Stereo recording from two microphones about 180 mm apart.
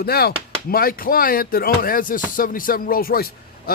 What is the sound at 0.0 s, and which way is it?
Speech, 60° left (ahead or behind).